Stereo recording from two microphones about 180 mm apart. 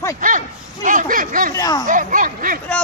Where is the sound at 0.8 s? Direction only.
50° right (ahead or behind).